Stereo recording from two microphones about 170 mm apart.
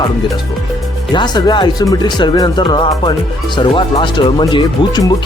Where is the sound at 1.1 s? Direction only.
25° left (ahead or behind).